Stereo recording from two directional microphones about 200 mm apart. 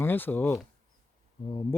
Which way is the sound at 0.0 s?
10° left (ahead or behind).